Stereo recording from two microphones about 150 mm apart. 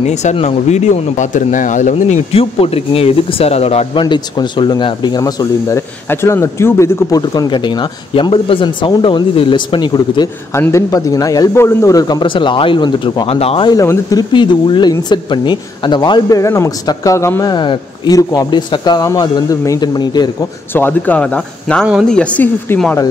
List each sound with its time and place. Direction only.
0.0 s speech: 50° left (ahead or behind)
2.3 s speech: 40° left (ahead or behind)
4.0 s speech: 30° left (ahead or behind)
10.5 s speech: 20° left (ahead or behind); by 13.7 s 40° left (ahead or behind)
13.7 s speech: 25° left (ahead or behind)
20.7 s speech: 15° left (ahead or behind)